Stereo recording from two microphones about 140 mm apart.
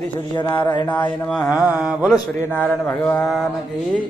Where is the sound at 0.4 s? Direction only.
30° left (ahead or behind).